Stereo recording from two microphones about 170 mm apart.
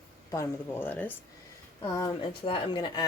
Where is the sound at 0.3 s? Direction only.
15° left (ahead or behind).